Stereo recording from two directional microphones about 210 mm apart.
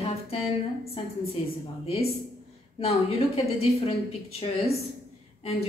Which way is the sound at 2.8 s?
30° left (ahead or behind).